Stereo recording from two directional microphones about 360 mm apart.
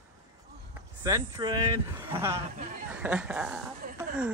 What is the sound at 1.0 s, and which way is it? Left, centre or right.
Speech, centre.